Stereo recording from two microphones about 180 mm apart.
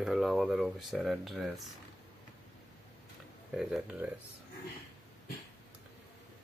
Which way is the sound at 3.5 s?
Centre (ahead or behind).